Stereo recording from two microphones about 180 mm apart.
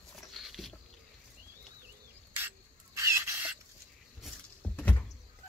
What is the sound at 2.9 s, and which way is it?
Rodents, 15° right (ahead or behind).